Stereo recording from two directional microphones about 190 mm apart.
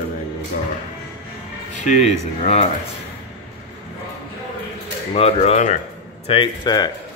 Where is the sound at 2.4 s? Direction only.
35° left (ahead or behind).